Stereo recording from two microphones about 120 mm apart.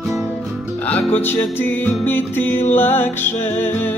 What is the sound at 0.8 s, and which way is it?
Music, 15° left (ahead or behind).